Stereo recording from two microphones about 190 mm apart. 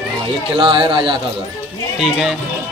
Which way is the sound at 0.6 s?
25° right (ahead or behind).